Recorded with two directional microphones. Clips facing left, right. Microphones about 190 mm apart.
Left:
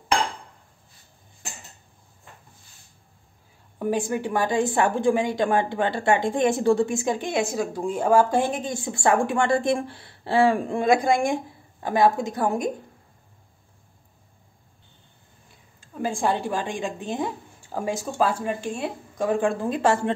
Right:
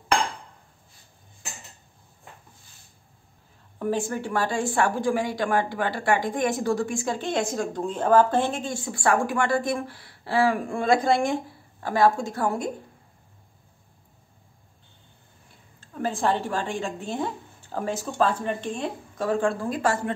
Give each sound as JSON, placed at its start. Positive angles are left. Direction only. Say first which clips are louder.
{"t": 3.8, "sound": "a woman's voice", "louder": "left 2 dB", "side_deg": 15}
{"t": 15.8, "sound": "a woman's voice", "louder": "left 1 dB", "side_deg": 10}